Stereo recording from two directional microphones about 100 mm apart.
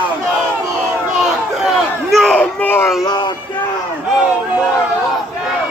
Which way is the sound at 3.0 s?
45° left (ahead or behind).